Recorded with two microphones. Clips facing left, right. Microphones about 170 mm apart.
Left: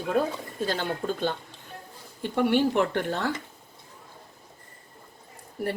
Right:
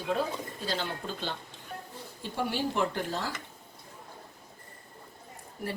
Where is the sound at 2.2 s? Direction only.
65° left (ahead or behind).